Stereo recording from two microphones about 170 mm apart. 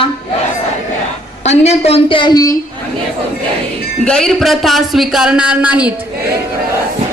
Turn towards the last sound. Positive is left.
turn(degrees=-10)  # may be behind; listen again after turning